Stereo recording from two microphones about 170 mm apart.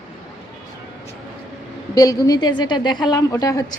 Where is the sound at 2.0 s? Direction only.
20° left (ahead or behind).